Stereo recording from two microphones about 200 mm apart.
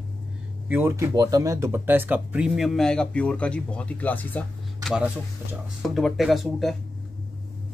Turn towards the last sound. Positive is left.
turn(degrees=0)  # may be behind; listen again after turning